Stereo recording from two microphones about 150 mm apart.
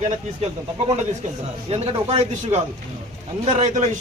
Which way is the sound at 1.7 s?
40° right (ahead or behind).